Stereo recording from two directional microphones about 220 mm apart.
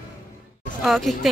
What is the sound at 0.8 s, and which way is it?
Speech, centre (ahead or behind).